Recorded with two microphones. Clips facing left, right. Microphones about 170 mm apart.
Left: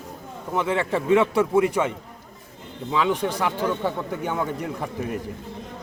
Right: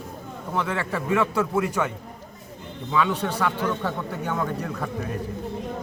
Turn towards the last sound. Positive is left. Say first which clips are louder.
# left 1 dB
turn(degrees=20)  # may be behind; listen again after turning